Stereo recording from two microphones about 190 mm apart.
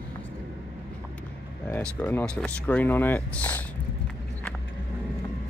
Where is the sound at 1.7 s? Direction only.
10° left (ahead or behind).